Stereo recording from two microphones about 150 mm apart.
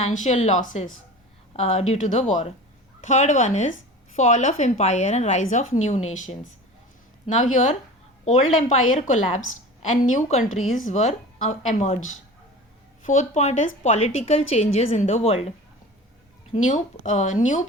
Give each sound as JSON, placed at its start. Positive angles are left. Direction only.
{"t": 0.0, "sound": "a woman's voice", "side_deg": 50}
{"t": 1.5, "sound": "a woman's voice", "side_deg": 45}
{"t": 13.1, "sound": "a woman's voice", "side_deg": 50}
{"t": 16.5, "sound": "a woman's voice", "side_deg": 50}